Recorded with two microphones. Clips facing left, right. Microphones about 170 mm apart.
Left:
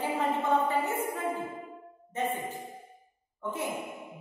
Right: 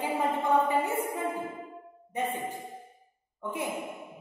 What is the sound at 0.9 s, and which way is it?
Speech, 15° right (ahead or behind).